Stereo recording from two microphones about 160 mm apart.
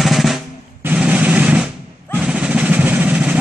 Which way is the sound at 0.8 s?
10° right (ahead or behind).